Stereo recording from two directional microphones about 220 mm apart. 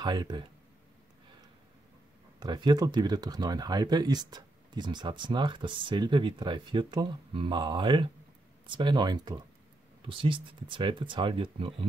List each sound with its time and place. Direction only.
0.0 s speech: 20° right (ahead or behind)
2.4 s speech: 20° right (ahead or behind)